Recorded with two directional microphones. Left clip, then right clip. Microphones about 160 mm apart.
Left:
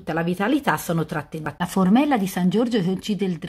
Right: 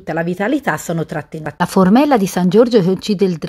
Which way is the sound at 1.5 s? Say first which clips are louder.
Right 8 dB; 45° right (ahead or behind).